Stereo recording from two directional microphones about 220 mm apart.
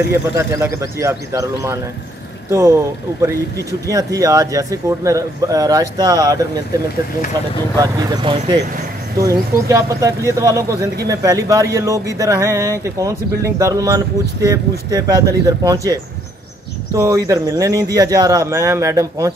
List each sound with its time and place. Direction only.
0.4 s speech: 10° right (ahead or behind)
7.8 s speech: 20° right (ahead or behind)